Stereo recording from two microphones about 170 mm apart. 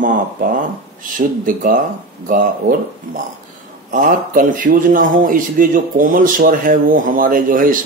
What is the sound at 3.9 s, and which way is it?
A man's voice, 50° right (ahead or behind).